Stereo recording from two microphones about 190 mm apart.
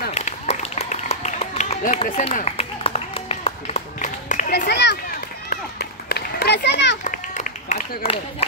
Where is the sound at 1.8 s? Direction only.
45° left (ahead or behind).